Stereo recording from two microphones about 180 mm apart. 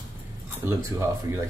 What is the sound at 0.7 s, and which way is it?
Speech, 15° right (ahead or behind).